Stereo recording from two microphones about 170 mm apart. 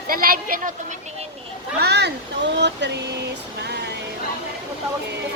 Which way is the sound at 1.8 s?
80° right.